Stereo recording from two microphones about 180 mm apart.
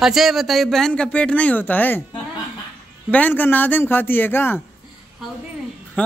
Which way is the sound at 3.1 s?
10° left (ahead or behind).